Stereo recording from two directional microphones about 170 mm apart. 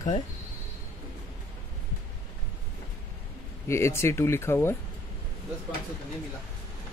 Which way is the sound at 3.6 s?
15° left (ahead or behind).